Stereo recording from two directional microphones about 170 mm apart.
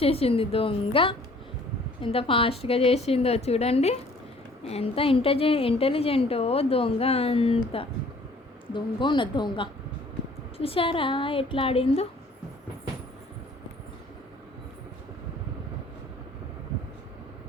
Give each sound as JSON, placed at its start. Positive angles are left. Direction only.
{"t": 0.0, "sound": "a woman's voice", "side_deg": 35}
{"t": 8.7, "sound": "a woman's voice", "side_deg": 30}